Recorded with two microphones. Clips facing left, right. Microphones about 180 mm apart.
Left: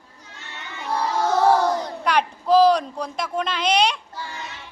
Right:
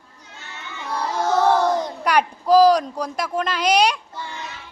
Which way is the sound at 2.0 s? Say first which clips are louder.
Right 2 dB; 5° right (ahead or behind).